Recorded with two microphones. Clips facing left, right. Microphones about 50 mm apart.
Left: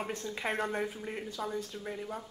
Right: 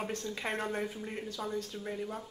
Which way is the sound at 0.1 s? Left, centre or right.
Centre.